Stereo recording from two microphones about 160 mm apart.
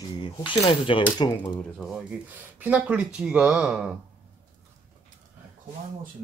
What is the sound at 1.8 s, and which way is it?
Speech, 5° right (ahead or behind).